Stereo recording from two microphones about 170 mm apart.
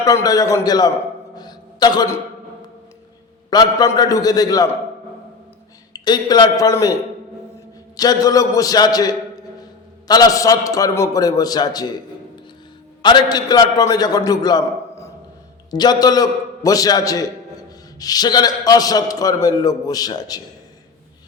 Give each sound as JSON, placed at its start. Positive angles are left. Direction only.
{"t": 0.0, "sound": "a man's voice", "side_deg": 20}
{"t": 1.4, "sound": "music", "side_deg": 25}
{"t": 3.5, "sound": "a man's voice", "side_deg": 25}
{"t": 5.9, "sound": "a man's voice", "side_deg": 25}
{"t": 7.9, "sound": "a man's voice", "side_deg": 20}
{"t": 13.0, "sound": "a man's voice", "side_deg": 25}